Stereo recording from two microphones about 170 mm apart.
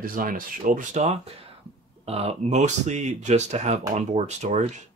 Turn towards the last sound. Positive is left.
turn(degrees=-40)  # may be behind; listen again after turning